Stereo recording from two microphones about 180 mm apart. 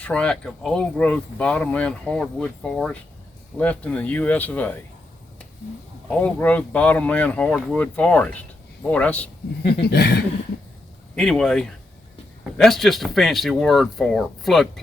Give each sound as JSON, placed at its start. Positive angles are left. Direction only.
{"t": 0.0, "sound": "speech", "side_deg": 5}
{"t": 6.1, "sound": "speech", "side_deg": 10}
{"t": 9.8, "sound": "speech", "side_deg": 65}
{"t": 11.1, "sound": "speech", "side_deg": 5}